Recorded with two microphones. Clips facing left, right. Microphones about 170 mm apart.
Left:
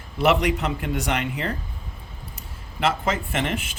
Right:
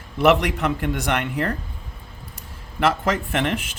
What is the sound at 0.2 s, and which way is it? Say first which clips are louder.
Speech: right 3 dB; 60° right (ahead or behind).